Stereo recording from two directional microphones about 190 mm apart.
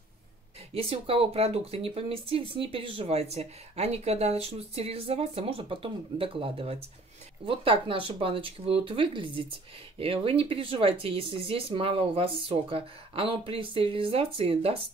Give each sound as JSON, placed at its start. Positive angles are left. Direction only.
{"t": 0.7, "sound": "speech", "side_deg": -30}